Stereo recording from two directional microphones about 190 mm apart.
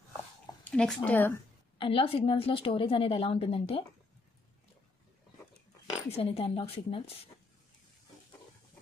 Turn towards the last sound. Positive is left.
turn(degrees=30)  # may be behind; listen again after turning